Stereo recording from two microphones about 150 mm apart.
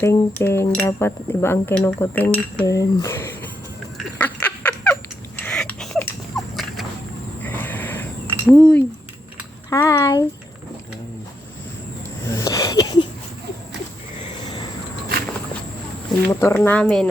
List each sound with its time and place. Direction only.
0.0 s speech: 15° left (ahead or behind)
2.6 s speech: 20° left (ahead or behind)
3.9 s a sound: 10° left (ahead or behind)
5.4 s horse: 10° left (ahead or behind)
7.4 s a sound: 10° left (ahead or behind)
8.4 s speech: 10° left (ahead or behind)
9.6 s speech: 20° left (ahead or behind)
12.3 s a sound: 20° left (ahead or behind)
16.3 s speech: 20° left (ahead or behind)